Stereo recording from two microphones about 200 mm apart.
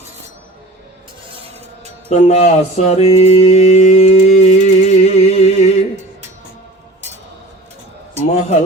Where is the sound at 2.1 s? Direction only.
35° left (ahead or behind).